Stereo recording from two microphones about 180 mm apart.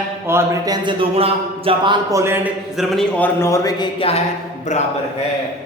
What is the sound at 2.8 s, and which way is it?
Speech, centre (ahead or behind).